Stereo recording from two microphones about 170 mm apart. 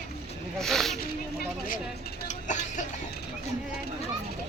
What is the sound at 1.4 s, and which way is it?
Speech, 55° left (ahead or behind).